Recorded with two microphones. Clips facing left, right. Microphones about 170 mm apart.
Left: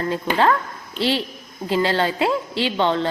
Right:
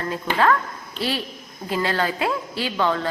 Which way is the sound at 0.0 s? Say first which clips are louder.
Left 2 dB; 30° left (ahead or behind).